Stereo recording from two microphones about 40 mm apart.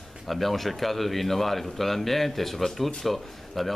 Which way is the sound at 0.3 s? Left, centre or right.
Centre.